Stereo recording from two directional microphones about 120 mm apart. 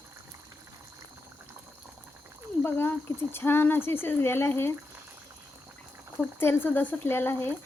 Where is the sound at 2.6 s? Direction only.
20° left (ahead or behind).